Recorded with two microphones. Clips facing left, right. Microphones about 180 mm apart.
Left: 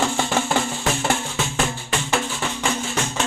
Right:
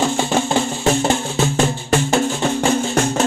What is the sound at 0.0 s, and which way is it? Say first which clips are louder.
Music: right 4 dB; 20° right (ahead or behind).